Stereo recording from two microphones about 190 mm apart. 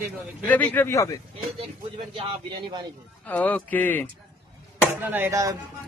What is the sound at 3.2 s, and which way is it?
Speech, 10° left (ahead or behind).